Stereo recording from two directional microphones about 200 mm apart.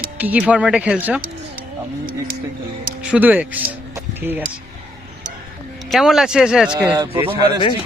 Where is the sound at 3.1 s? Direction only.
10° right (ahead or behind).